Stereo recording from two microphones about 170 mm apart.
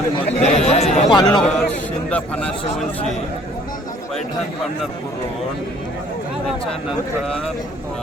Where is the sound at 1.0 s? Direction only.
25° left (ahead or behind).